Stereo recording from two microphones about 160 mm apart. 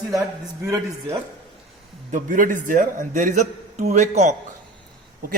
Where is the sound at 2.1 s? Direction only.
55° right (ahead or behind).